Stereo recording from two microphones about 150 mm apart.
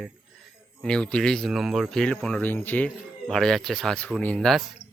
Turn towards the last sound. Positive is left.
turn(degrees=5)  # may be behind; listen again after turning